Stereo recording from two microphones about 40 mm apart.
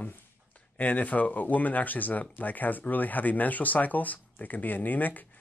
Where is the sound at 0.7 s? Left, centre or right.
Left.